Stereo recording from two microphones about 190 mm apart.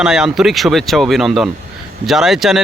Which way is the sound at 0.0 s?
5° right (ahead or behind).